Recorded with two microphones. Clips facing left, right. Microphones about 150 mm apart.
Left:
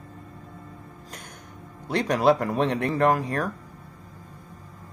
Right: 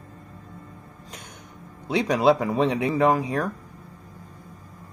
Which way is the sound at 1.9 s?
10° right (ahead or behind).